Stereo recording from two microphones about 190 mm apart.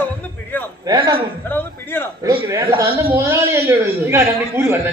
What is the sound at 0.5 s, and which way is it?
Speech, 10° left (ahead or behind).